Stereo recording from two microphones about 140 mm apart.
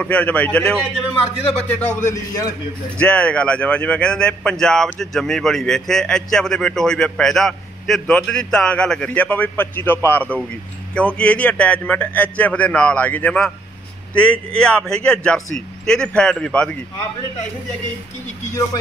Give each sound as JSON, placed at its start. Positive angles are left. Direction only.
{"t": 0.0, "sound": "a man's voice", "side_deg": 10}
{"t": 2.0, "sound": "a man's voice", "side_deg": 25}
{"t": 3.0, "sound": "a man's voice", "side_deg": 10}